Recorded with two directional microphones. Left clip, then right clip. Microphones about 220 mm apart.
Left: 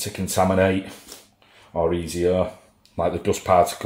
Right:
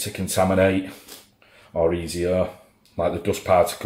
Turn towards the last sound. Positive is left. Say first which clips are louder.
# left 1 dB
turn(degrees=25)  # may be behind; listen again after turning